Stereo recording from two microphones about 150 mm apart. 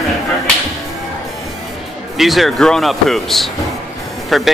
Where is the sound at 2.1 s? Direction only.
Centre (ahead or behind).